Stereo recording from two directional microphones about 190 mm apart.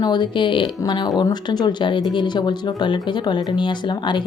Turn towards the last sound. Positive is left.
turn(degrees=25)  # may be behind; listen again after turning